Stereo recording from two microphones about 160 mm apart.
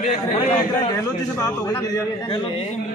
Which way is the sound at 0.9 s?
20° left (ahead or behind).